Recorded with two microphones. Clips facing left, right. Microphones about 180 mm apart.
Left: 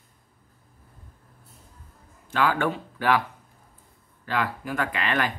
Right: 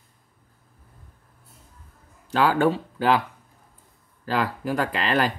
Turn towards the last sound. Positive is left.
turn(degrees=-35)  # may be behind; listen again after turning